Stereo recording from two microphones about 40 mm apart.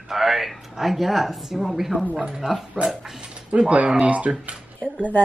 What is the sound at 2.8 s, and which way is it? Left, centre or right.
Dog, centre.